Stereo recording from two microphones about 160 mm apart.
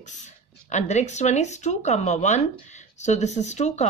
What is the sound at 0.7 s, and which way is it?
Speech, 45° left (ahead or behind).